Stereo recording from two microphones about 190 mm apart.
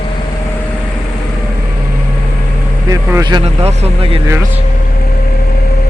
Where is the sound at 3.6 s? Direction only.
30° right (ahead or behind).